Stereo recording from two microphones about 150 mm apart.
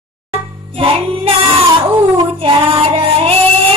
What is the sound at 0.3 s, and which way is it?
Music, 40° right (ahead or behind).